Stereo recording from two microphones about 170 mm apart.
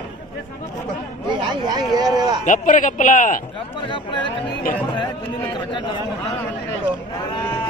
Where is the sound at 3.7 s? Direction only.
30° left (ahead or behind).